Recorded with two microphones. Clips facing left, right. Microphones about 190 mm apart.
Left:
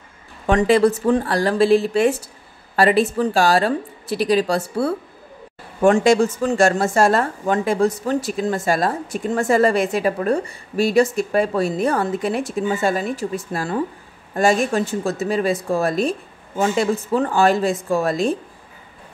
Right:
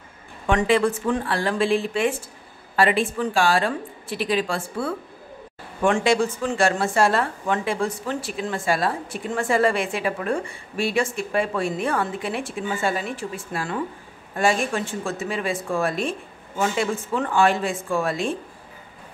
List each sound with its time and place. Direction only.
0.5 s speech: 40° left (ahead or behind)